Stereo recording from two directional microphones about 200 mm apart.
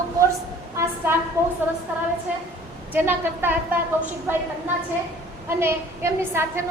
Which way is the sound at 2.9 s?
10° right (ahead or behind).